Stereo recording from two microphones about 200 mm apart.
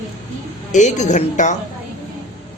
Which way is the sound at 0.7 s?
35° left (ahead or behind).